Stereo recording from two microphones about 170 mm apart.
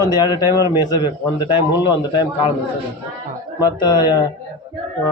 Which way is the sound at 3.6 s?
25° left (ahead or behind).